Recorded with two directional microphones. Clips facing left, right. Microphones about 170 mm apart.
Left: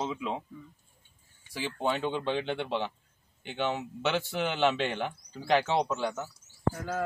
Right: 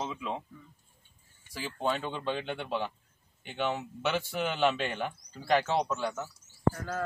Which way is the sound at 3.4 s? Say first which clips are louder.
Left 1 dB; 10° right (ahead or behind).